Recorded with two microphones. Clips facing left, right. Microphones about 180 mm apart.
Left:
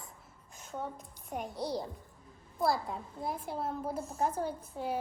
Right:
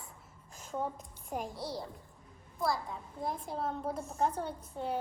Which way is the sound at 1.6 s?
20° left (ahead or behind).